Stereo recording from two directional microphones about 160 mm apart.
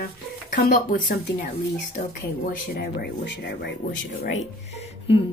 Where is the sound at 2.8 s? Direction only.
90° left.